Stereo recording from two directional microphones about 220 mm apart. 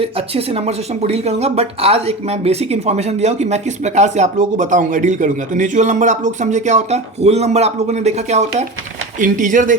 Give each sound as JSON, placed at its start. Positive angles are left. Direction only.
{"t": 0.0, "sound": "speech", "side_deg": -25}